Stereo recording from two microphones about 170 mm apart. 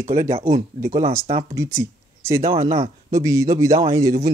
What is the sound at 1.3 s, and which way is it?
Speech, 35° right (ahead or behind).